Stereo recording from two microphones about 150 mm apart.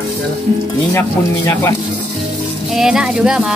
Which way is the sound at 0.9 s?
15° left (ahead or behind).